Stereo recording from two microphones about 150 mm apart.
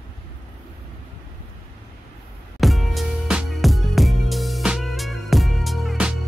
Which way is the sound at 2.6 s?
Centre (ahead or behind).